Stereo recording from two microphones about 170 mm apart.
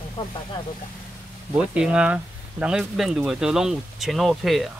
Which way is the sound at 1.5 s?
5° right (ahead or behind).